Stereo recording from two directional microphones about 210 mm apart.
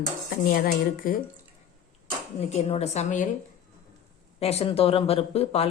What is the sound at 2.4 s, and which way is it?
Speech, 30° left (ahead or behind).